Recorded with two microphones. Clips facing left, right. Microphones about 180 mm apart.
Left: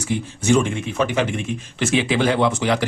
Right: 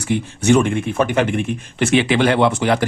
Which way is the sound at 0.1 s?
65° right (ahead or behind).